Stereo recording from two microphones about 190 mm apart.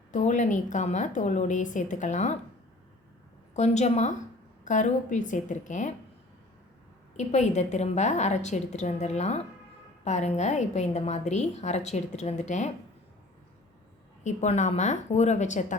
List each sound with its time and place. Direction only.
0.1 s a woman's voice: 40° left (ahead or behind)
3.5 s a woman's voice: 35° left (ahead or behind)
7.2 s a woman's voice: 35° left (ahead or behind)
14.3 s a woman's voice: 35° left (ahead or behind)